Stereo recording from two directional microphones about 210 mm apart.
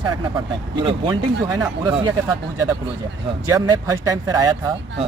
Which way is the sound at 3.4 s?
15° right (ahead or behind).